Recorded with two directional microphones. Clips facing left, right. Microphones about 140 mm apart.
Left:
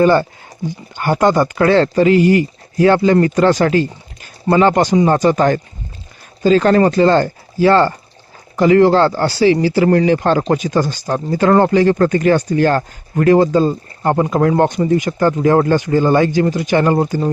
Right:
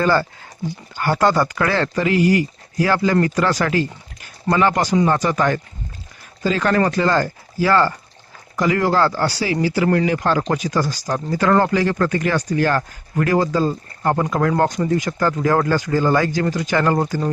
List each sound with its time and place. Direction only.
0.0 s speech: 20° left (ahead or behind)